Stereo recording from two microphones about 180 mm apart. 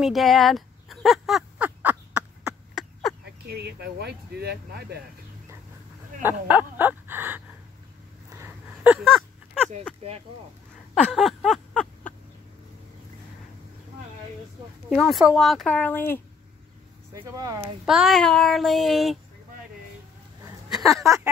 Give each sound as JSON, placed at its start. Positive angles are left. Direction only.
{"t": 0.0, "sound": "a sound", "side_deg": 0}
{"t": 3.4, "sound": "speech", "side_deg": -65}
{"t": 6.2, "sound": "speech", "side_deg": -10}
{"t": 8.3, "sound": "gasp", "side_deg": -10}
{"t": 11.1, "sound": "a sound", "side_deg": 0}
{"t": 14.9, "sound": "child singing", "side_deg": 0}
{"t": 17.1, "sound": "speech", "side_deg": -20}
{"t": 17.8, "sound": "child singing", "side_deg": 0}
{"t": 20.7, "sound": "speech", "side_deg": 0}